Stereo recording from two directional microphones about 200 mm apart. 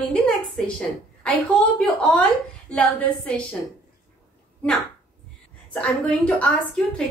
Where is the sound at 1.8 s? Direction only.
5° left (ahead or behind).